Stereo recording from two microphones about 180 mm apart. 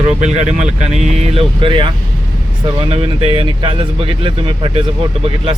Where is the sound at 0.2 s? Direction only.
40° right (ahead or behind).